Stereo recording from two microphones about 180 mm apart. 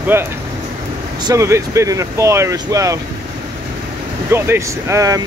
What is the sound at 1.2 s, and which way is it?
Speech, 15° right (ahead or behind).